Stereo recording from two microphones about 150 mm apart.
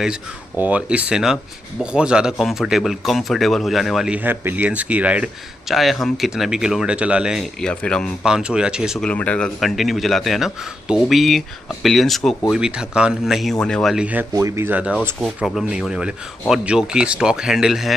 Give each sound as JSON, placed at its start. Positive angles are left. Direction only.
{"t": 0.0, "sound": "speech", "side_deg": -10}
{"t": 9.0, "sound": "speech", "side_deg": 10}
{"t": 13.9, "sound": "speech", "side_deg": -10}
{"t": 14.3, "sound": "speech", "side_deg": -20}